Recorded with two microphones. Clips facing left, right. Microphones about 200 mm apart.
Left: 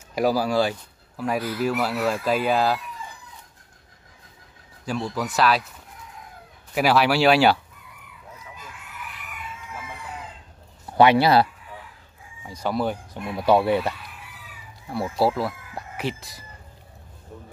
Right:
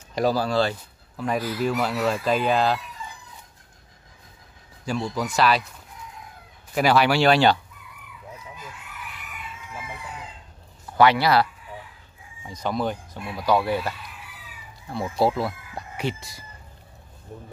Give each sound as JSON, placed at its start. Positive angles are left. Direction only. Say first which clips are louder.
{"t": 0.1, "sound": "speech", "louder": "left 1 dB", "side_deg": 10}
{"t": 4.8, "sound": "speech", "louder": "even", "side_deg": 5}
{"t": 6.7, "sound": "speech", "louder": "even", "side_deg": 5}
{"t": 10.9, "sound": "speech", "louder": "left 2 dB", "side_deg": 20}
{"t": 12.4, "sound": "speech", "louder": "left 1 dB", "side_deg": 10}
{"t": 13.4, "sound": "speech", "louder": "left 3 dB", "side_deg": 25}
{"t": 14.9, "sound": "speech", "louder": "even", "side_deg": 5}